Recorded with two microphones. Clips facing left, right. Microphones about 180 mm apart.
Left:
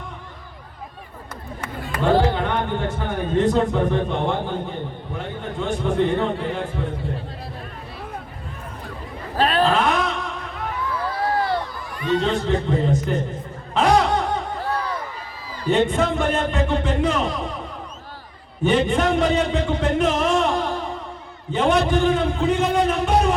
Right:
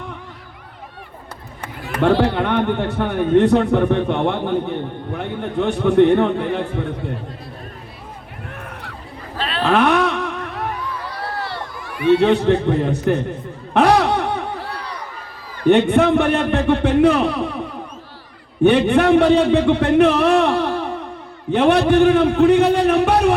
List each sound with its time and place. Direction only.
2.2 s a man's voice: 65° right (ahead or behind)
9.4 s a sound: 45° left (ahead or behind)
9.6 s a sound: 65° right (ahead or behind)
11.3 s a sound: 50° left (ahead or behind)
11.9 s a man's voice: 10° right (ahead or behind)
12.2 s a man's voice: 65° right (ahead or behind)
13.7 s snicker: 65° right (ahead or behind)
15.6 s a man's voice: 65° right (ahead or behind)
18.6 s a man's voice: 65° right (ahead or behind)